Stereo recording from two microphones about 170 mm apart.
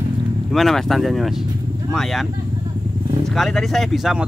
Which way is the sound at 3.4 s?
Centre (ahead or behind).